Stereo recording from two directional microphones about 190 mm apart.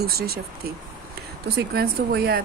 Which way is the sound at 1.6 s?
55° right (ahead or behind).